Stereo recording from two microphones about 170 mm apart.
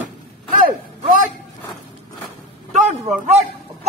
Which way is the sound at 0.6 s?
55° right (ahead or behind).